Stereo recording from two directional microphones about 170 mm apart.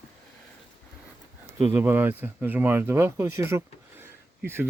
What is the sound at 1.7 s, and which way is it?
Speech, 10° right (ahead or behind).